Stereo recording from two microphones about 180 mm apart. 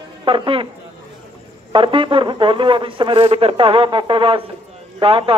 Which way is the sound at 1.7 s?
30° right (ahead or behind).